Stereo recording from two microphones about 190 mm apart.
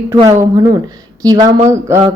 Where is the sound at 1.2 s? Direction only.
20° right (ahead or behind).